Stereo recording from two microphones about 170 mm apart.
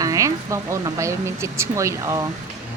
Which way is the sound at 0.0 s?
20° right (ahead or behind).